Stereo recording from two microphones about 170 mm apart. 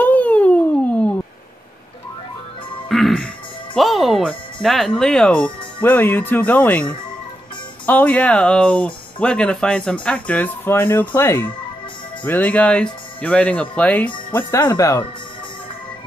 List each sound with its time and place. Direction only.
0.0 s a sound: 10° left (ahead or behind)
2.9 s music: centre (ahead or behind)
3.7 s speech: centre (ahead or behind)
14.6 s speech: 20° left (ahead or behind)